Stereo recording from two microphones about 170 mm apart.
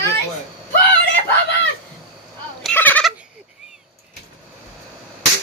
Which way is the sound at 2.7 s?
10° left (ahead or behind).